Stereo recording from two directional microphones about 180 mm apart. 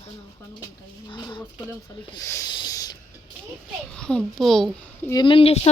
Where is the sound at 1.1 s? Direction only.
25° left (ahead or behind).